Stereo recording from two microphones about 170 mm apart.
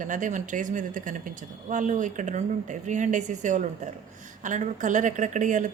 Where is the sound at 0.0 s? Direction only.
50° right (ahead or behind).